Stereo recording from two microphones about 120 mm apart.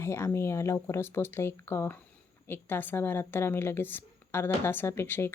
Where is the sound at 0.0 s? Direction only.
20° left (ahead or behind).